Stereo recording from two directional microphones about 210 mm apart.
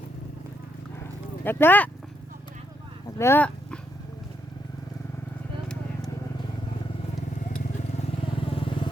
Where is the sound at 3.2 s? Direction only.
10° left (ahead or behind).